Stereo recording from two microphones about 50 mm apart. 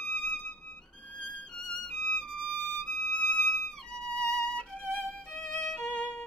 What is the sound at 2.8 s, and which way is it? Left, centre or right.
Violin, left.